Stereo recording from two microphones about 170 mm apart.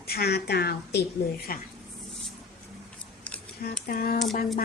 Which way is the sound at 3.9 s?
60° left (ahead or behind).